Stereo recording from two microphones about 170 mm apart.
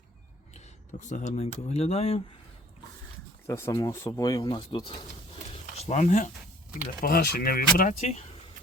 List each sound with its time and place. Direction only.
0.5 s speech: 45° left (ahead or behind)
3.4 s speech: 15° left (ahead or behind)
5.8 s speech: 40° left (ahead or behind)
7.0 s speech: 60° left (ahead or behind); by 8.2 s 45° left (ahead or behind)